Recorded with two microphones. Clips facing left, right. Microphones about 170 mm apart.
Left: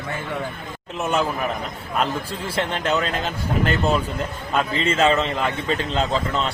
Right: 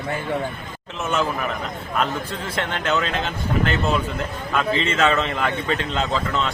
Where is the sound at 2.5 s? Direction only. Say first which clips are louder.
Left 1 dB; 35° left (ahead or behind).